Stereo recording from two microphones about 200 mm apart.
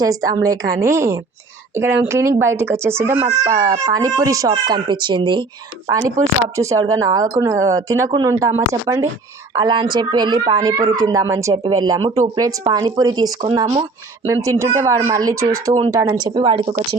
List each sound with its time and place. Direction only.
0.0 s speech: 15° right (ahead or behind)
14.4 s speech: 15° right (ahead or behind)